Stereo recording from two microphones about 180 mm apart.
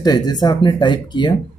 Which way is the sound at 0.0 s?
20° left (ahead or behind).